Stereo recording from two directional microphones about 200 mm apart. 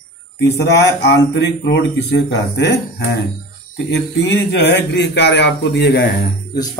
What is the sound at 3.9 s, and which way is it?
A man's voice, 60° left (ahead or behind).